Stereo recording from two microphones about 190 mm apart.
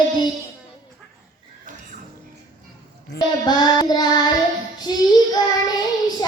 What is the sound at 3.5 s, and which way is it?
Child singing, 20° left (ahead or behind).